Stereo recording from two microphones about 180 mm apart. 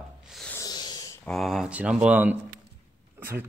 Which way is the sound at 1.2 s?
Centre (ahead or behind).